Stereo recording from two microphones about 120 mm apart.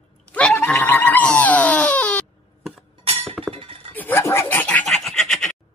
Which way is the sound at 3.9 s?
15° left (ahead or behind).